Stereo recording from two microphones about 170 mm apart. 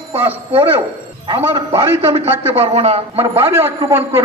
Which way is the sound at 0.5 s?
30° right (ahead or behind).